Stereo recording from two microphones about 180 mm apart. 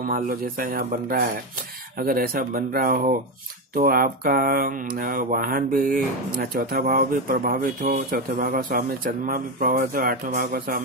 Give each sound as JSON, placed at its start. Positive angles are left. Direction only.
{"t": 0.1, "sound": "mantra", "side_deg": -55}
{"t": 2.0, "sound": "speech", "side_deg": -55}
{"t": 3.7, "sound": "mantra", "side_deg": -50}